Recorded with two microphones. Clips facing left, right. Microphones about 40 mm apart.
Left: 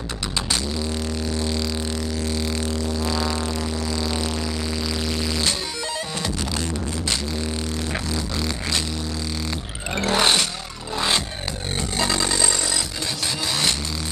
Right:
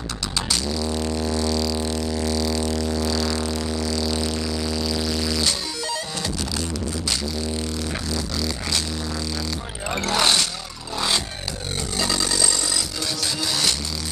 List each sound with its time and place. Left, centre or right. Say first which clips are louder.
1.3 s music: right 2 dB; left
8.4 s music: left 1 dB; left
10.0 s vehicle: left 1 dB; left
11.0 s music: left 1 dB; left
12.0 s a sound: left 1 dB; left
13.5 s music: left 1 dB; left